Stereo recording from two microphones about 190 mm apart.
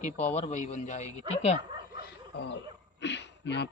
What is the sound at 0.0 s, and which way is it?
Speech, 35° left (ahead or behind).